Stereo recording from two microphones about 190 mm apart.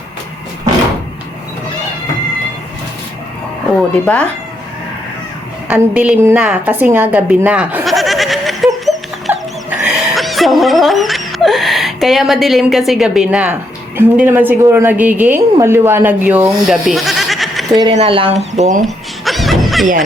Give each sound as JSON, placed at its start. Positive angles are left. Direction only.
{"t": 4.0, "sound": "speech", "side_deg": 5}
{"t": 5.6, "sound": "a sound", "side_deg": -5}
{"t": 9.3, "sound": "dog", "side_deg": -5}
{"t": 15.5, "sound": "speech", "side_deg": -15}
{"t": 16.6, "sound": "bleat", "side_deg": 0}
{"t": 17.7, "sound": "speech", "side_deg": -20}
{"t": 19.2, "sound": "music", "side_deg": 0}